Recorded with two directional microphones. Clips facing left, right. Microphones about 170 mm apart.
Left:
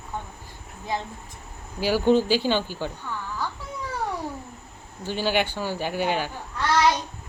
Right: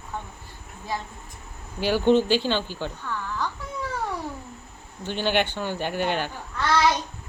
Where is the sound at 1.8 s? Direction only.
10° left (ahead or behind).